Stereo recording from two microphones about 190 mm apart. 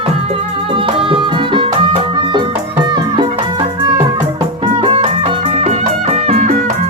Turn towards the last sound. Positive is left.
turn(degrees=-40)  # may be behind; listen again after turning